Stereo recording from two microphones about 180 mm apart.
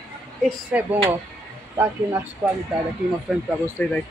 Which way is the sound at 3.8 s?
10° left (ahead or behind).